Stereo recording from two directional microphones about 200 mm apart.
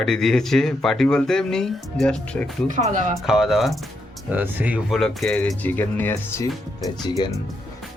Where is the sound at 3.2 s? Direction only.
Centre (ahead or behind).